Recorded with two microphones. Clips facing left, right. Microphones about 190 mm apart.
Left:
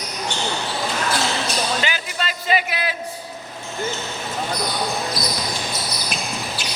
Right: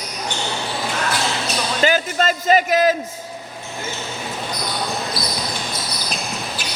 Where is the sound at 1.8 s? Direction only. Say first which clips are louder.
Right 8 dB; 45° right (ahead or behind).